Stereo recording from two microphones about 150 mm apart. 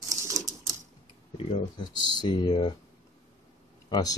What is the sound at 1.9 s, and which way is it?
Speech, 30° left (ahead or behind).